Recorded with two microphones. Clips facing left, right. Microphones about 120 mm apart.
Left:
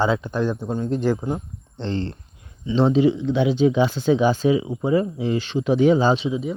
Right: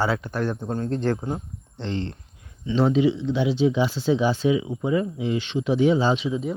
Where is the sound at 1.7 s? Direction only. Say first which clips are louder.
Left 3 dB; 35° left (ahead or behind).